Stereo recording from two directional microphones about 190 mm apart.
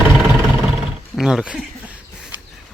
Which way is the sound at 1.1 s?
5° right (ahead or behind).